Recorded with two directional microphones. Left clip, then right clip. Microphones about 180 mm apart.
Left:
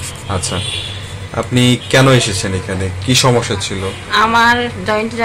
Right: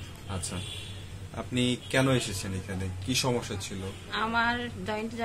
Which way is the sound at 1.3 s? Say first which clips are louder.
Left 16 dB; 60° left (ahead or behind).